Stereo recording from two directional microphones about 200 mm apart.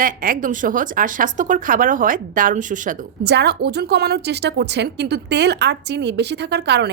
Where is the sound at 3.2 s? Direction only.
55° right (ahead or behind).